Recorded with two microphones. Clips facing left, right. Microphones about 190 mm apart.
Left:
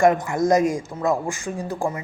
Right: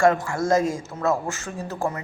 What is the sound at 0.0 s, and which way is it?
A man's voice, 20° left (ahead or behind).